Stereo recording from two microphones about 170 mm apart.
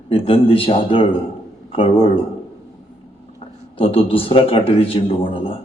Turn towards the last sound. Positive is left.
turn(degrees=30)  # may be behind; listen again after turning